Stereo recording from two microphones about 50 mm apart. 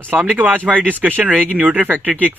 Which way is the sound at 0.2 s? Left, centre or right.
Right.